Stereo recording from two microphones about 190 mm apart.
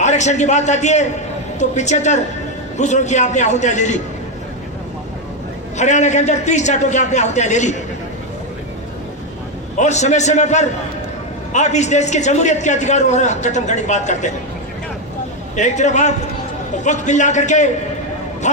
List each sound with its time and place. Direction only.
0.0 s a man's voice: 40° left (ahead or behind)
5.7 s a man's voice: 40° left (ahead or behind)
9.7 s a man's voice: 40° left (ahead or behind)
15.5 s a man's voice: 40° left (ahead or behind)